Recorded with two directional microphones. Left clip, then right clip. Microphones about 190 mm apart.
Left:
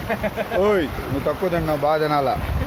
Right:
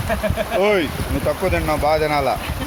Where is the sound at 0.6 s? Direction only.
10° left (ahead or behind).